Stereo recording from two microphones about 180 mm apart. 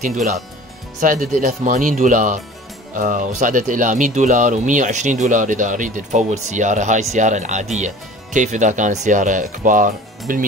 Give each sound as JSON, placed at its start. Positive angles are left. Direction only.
{"t": 0.0, "sound": "speech", "side_deg": -40}